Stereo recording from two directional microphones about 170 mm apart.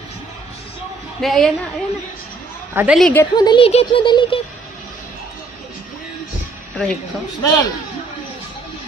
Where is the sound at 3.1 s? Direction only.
20° left (ahead or behind).